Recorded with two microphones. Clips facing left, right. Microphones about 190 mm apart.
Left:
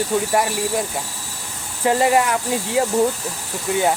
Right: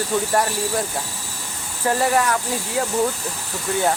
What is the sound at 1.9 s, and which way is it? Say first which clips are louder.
Speech: left 3 dB; 20° left (ahead or behind).